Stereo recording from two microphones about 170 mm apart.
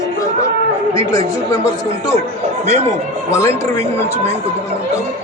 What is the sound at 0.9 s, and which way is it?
Speech, 20° left (ahead or behind).